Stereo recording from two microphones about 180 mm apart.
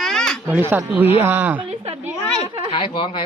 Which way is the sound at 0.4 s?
10° right (ahead or behind).